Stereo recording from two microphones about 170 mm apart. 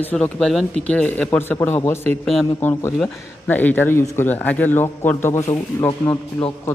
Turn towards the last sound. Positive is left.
turn(degrees=15)  # may be behind; listen again after turning